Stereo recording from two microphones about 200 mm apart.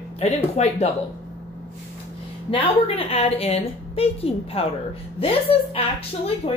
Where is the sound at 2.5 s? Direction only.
30° left (ahead or behind).